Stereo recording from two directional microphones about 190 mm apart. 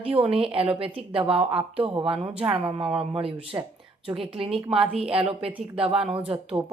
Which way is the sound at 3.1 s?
30° right (ahead or behind).